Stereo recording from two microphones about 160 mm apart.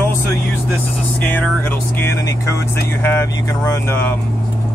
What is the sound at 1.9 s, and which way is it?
Speech, 15° left (ahead or behind).